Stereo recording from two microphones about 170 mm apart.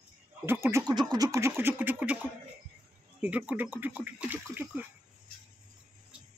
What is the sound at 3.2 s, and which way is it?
Speech, 10° right (ahead or behind).